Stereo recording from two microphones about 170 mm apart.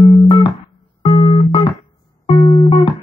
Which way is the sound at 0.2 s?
30° left (ahead or behind).